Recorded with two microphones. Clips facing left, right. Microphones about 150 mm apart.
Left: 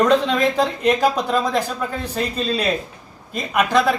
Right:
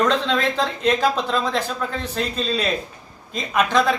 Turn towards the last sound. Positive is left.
turn(degrees=5)  # may be behind; listen again after turning